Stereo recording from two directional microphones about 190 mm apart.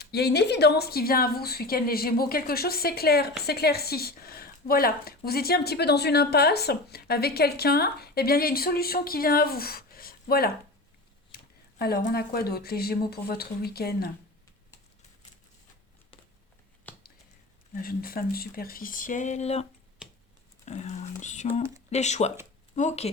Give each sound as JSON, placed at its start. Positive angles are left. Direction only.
{"t": 0.0, "sound": "speech", "side_deg": 60}
{"t": 11.8, "sound": "speech", "side_deg": 50}
{"t": 16.9, "sound": "a sound", "side_deg": 10}
{"t": 17.7, "sound": "speech", "side_deg": 50}
{"t": 20.0, "sound": "finger snapping", "side_deg": -5}
{"t": 20.7, "sound": "speech", "side_deg": 35}